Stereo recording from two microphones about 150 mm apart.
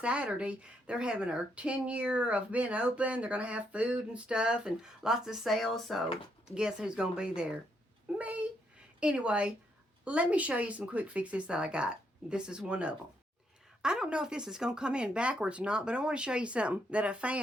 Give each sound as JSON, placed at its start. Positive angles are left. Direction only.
{"t": 0.0, "sound": "speech", "side_deg": -5}